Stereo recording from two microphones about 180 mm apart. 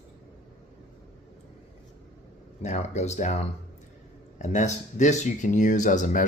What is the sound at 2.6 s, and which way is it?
Speech, 40° left (ahead or behind).